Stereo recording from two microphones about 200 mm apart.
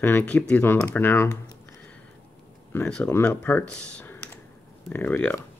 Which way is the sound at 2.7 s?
5° left (ahead or behind).